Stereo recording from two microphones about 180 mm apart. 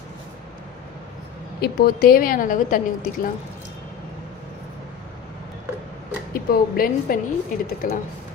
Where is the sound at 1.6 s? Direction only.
55° left (ahead or behind).